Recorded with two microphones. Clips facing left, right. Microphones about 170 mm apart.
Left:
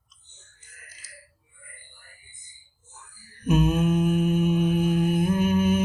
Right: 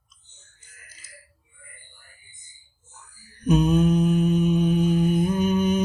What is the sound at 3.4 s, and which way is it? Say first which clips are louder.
Mantra: right 3 dB; 5° left (ahead or behind).